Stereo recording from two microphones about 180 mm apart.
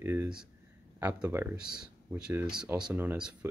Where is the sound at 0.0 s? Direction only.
15° right (ahead or behind).